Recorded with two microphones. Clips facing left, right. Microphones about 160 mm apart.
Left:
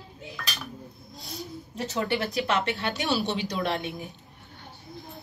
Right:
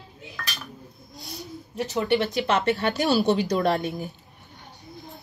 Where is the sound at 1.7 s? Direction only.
20° right (ahead or behind).